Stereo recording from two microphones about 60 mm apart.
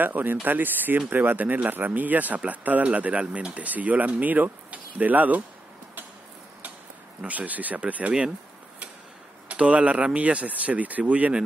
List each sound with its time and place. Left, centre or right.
0.0 s speech: right
7.2 s speech: right
9.5 s speech: right